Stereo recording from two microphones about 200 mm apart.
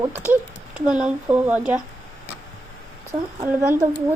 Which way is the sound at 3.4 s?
10° right (ahead or behind).